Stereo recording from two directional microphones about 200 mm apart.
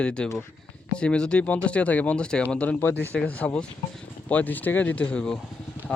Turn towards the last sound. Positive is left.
turn(degrees=5)  # may be behind; listen again after turning